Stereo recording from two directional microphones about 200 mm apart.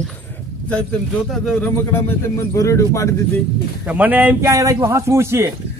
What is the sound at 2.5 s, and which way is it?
Speech, 15° left (ahead or behind).